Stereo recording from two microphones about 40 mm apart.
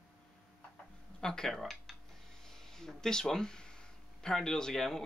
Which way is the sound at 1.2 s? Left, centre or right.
Centre.